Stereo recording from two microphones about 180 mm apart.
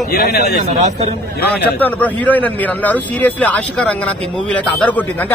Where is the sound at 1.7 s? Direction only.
10° left (ahead or behind).